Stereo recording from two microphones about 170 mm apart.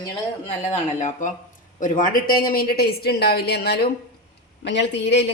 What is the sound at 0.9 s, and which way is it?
A woman's voice, 45° left (ahead or behind).